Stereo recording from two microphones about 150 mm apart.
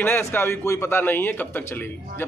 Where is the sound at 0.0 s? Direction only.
15° left (ahead or behind).